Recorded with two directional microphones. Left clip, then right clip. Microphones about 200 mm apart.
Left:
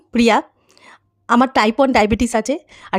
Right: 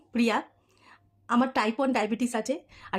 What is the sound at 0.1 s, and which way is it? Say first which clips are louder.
A woman's voice: left 12 dB; 45° left (ahead or behind).